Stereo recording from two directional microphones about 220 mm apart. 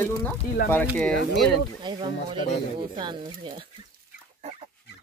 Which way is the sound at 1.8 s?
20° right (ahead or behind).